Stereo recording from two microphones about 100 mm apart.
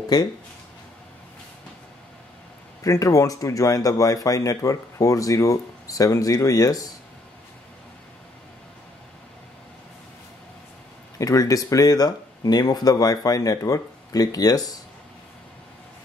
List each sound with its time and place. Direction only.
0.1 s speech: 40° left (ahead or behind)
2.8 s speech: 35° left (ahead or behind)
11.1 s speech: 35° left (ahead or behind)